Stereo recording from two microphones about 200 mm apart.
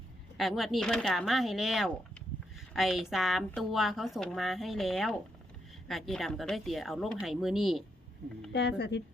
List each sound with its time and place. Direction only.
0.3 s a woman's voice: centre (ahead or behind)
8.5 s speech: 55° left (ahead or behind)